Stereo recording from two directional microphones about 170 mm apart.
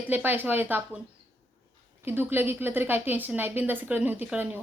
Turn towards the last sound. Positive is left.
turn(degrees=-10)  # may be behind; listen again after turning